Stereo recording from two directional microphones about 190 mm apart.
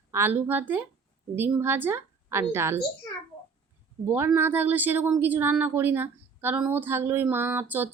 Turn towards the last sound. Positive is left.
turn(degrees=-10)  # may be behind; listen again after turning